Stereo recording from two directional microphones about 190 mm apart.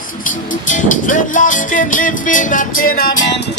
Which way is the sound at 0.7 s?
40° left (ahead or behind).